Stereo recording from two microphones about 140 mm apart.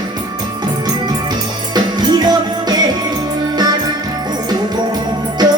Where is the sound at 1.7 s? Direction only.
30° right (ahead or behind).